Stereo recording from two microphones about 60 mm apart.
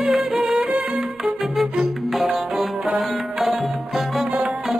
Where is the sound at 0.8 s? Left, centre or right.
Right.